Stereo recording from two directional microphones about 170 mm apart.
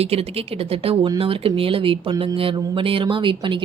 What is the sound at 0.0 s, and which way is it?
Speech, 35° right (ahead or behind).